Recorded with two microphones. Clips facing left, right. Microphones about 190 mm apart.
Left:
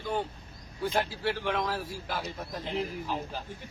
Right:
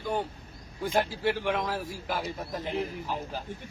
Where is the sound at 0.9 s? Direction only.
15° right (ahead or behind).